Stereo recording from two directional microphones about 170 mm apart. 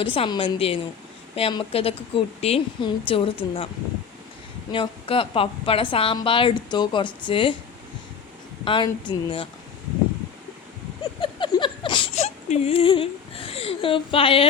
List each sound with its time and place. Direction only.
0.0 s a woman's voice: 30° left (ahead or behind)
4.7 s a woman's voice: 30° left (ahead or behind)
8.6 s speech: 30° left (ahead or behind)
11.2 s a sound: 30° left (ahead or behind)
12.1 s whimper: 40° left (ahead or behind)